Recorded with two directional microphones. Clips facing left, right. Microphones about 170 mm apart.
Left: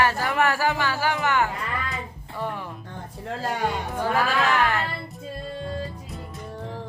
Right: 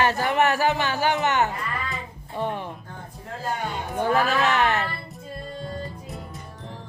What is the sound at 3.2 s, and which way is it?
Speech, 90° left.